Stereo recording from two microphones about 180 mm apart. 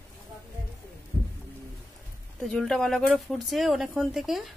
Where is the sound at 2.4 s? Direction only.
Centre (ahead or behind).